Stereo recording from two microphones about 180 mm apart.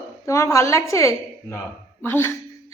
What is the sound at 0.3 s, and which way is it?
A woman's voice, 15° left (ahead or behind).